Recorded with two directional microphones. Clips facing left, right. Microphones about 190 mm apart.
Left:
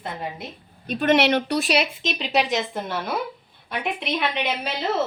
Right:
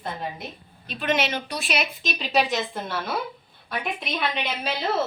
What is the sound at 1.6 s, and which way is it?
Speech, 30° left (ahead or behind).